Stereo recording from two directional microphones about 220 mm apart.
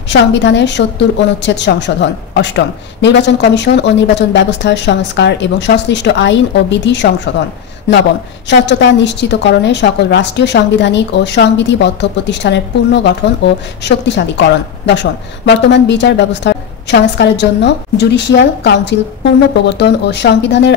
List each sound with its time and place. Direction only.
0.1 s a woman's voice: 55° left (ahead or behind)
8.5 s a woman's voice: 50° left (ahead or behind)